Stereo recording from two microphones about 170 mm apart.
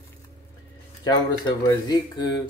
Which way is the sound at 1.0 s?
25° left (ahead or behind).